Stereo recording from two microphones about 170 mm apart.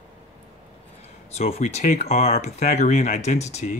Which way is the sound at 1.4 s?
40° left (ahead or behind).